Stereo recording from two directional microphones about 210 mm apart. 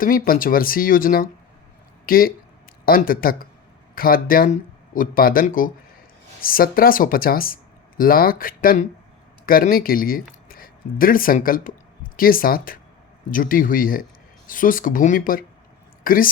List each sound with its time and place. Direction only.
0.0 s speech: 40° left (ahead or behind)